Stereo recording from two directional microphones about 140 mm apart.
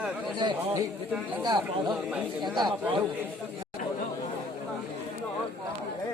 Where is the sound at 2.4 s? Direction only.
30° right (ahead or behind).